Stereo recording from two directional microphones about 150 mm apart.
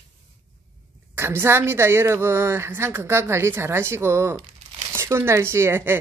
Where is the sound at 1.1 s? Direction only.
15° right (ahead or behind).